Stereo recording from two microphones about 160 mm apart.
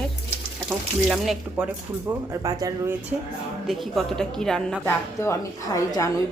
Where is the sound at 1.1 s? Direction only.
5° right (ahead or behind).